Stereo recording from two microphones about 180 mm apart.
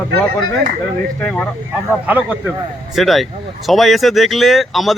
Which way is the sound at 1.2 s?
5° left (ahead or behind).